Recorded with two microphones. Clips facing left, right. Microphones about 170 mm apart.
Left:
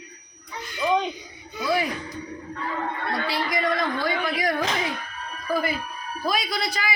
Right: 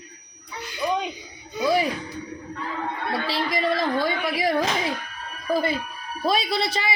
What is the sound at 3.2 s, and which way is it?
A man's voice, 25° right (ahead or behind).